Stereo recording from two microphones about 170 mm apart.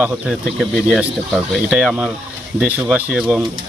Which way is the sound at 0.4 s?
Centre (ahead or behind).